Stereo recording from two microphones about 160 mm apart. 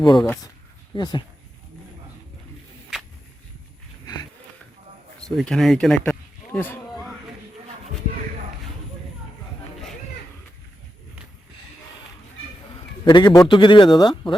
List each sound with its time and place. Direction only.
0.0 s a man's voice: 30° left (ahead or behind)
5.4 s speech: centre (ahead or behind)
13.1 s a man's voice: 25° left (ahead or behind)